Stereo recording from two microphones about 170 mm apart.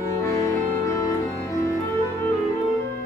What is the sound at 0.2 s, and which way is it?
Music, 20° left (ahead or behind).